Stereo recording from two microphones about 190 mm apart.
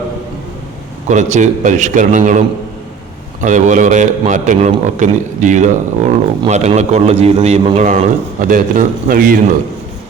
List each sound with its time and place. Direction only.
1.0 s a man's voice: 40° right (ahead or behind)
3.4 s a man's voice: 40° right (ahead or behind)